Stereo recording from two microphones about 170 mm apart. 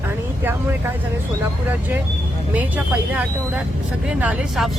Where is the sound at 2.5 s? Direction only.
10° right (ahead or behind).